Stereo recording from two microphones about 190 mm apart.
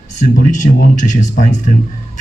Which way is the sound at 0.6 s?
35° left (ahead or behind).